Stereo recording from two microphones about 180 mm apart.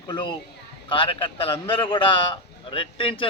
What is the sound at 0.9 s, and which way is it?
A man's voice, 30° left (ahead or behind).